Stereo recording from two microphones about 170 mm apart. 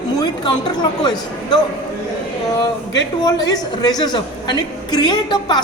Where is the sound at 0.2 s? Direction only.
25° left (ahead or behind).